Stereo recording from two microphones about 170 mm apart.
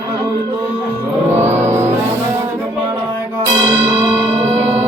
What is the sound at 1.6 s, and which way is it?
Vehicle, 15° right (ahead or behind).